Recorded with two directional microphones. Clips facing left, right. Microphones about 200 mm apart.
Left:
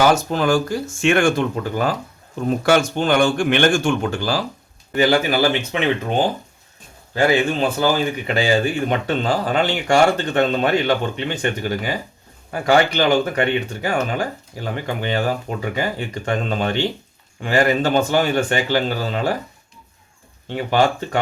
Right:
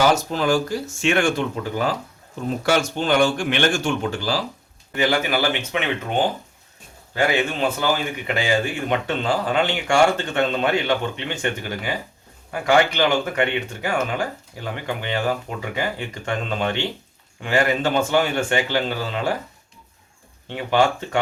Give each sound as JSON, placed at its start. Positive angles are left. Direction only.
{"t": 0.0, "sound": "speech", "side_deg": 50}
{"t": 4.9, "sound": "speech", "side_deg": 35}
{"t": 12.5, "sound": "speech", "side_deg": 35}
{"t": 20.6, "sound": "speech", "side_deg": 40}